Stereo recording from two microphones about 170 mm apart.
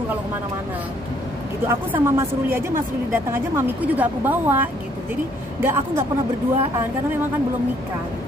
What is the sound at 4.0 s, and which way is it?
A woman's voice, 10° right (ahead or behind).